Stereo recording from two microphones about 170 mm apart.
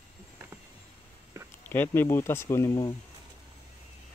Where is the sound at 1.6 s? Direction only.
10° left (ahead or behind).